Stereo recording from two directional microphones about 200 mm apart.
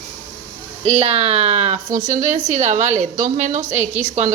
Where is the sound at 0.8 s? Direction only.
30° right (ahead or behind).